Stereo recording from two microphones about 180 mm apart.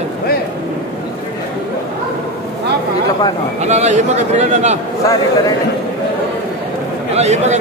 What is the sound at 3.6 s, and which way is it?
A man's voice, 40° right (ahead or behind).